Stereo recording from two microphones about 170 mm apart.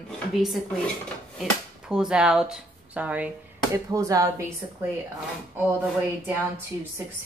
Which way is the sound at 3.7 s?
20° right (ahead or behind).